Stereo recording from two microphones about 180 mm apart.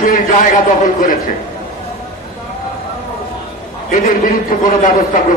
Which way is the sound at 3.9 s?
45° left (ahead or behind).